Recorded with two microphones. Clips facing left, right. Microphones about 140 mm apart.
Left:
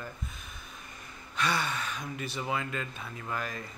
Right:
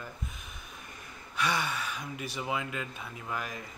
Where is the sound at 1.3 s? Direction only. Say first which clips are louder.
Even; 10° right (ahead or behind).